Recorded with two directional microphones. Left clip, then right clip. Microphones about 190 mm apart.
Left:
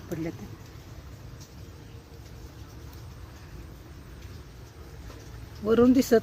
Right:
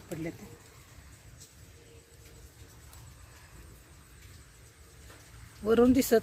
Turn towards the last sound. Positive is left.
turn(degrees=-15)  # may be behind; listen again after turning